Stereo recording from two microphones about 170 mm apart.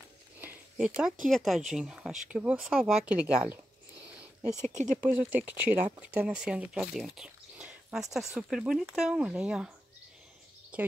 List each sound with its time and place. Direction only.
0.4 s a sound: 5° right (ahead or behind)
1.2 s speech: centre (ahead or behind)
4.6 s speech: 45° right (ahead or behind)
5.2 s speech: 10° right (ahead or behind)
10.7 s speech: 10° right (ahead or behind)